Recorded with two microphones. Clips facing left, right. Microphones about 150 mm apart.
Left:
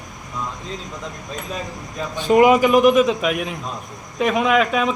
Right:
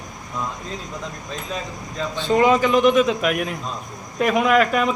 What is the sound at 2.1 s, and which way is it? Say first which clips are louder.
A man's voice: left 4 dB; 15° left (ahead or behind).